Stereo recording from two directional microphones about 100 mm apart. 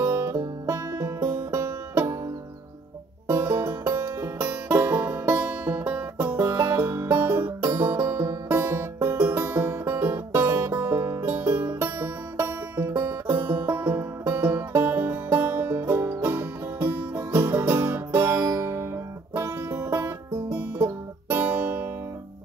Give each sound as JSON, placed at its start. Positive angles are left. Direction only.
{"t": 0.0, "sound": "music", "side_deg": -30}
{"t": 3.3, "sound": "music", "side_deg": -25}